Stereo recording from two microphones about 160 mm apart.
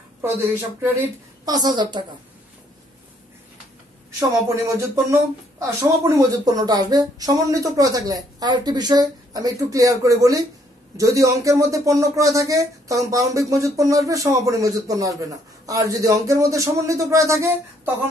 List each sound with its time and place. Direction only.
0.2 s speech: 15° right (ahead or behind)
4.6 s speech: 15° right (ahead or behind)